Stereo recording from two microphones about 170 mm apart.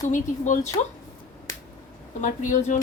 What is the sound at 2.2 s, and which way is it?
Speech, 50° left (ahead or behind).